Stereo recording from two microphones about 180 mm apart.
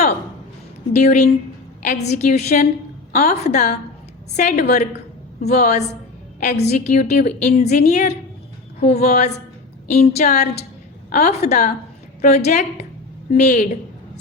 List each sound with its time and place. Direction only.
0.9 s a woman's voice: 40° left (ahead or behind)